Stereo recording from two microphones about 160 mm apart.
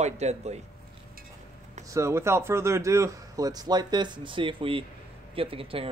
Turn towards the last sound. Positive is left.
turn(degrees=-35)  # may be behind; listen again after turning